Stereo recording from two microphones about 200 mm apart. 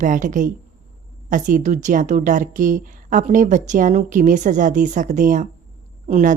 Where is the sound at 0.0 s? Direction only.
40° right (ahead or behind).